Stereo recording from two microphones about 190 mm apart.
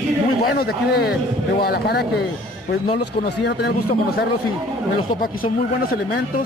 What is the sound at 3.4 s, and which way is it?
A man's voice, 60° left (ahead or behind).